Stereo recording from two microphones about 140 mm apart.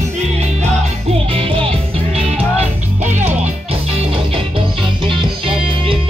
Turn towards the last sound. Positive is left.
turn(degrees=-40)  # may be behind; listen again after turning